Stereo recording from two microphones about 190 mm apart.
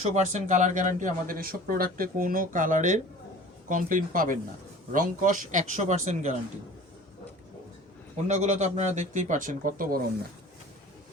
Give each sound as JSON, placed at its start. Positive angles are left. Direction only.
{"t": 0.1, "sound": "speech", "side_deg": -40}
{"t": 8.3, "sound": "speech", "side_deg": -40}